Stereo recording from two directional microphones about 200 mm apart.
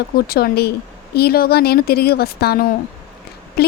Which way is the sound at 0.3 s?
50° left (ahead or behind).